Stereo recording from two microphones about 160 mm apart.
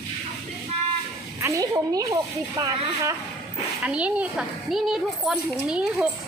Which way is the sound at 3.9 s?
5° right (ahead or behind).